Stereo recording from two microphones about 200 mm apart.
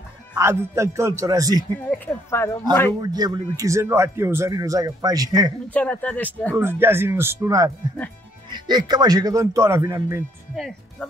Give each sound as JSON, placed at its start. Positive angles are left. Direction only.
{"t": 0.4, "sound": "speech", "side_deg": -15}
{"t": 2.0, "sound": "speech", "side_deg": 10}
{"t": 3.0, "sound": "speech", "side_deg": -20}
{"t": 5.7, "sound": "speech", "side_deg": 5}
{"t": 6.5, "sound": "speech", "side_deg": -10}
{"t": 10.5, "sound": "speech", "side_deg": 0}